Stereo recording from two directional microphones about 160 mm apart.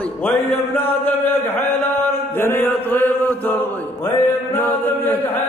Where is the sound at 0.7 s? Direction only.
10° left (ahead or behind).